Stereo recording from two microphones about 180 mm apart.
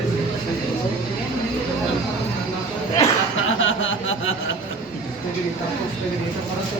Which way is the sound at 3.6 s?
90° left.